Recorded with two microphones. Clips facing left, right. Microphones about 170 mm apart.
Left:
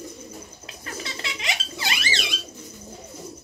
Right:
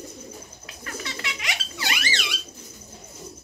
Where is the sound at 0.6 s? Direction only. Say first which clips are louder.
Right 1 dB; 25° left (ahead or behind).